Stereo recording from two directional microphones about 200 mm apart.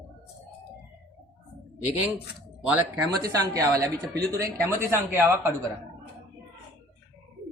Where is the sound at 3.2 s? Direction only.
20° right (ahead or behind).